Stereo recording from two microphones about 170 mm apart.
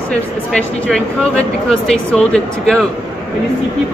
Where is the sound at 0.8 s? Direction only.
5° left (ahead or behind).